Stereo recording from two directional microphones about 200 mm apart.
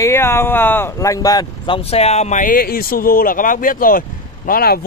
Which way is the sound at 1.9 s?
30° left (ahead or behind).